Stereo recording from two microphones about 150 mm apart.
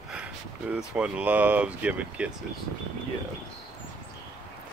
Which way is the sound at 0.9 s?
10° right (ahead or behind).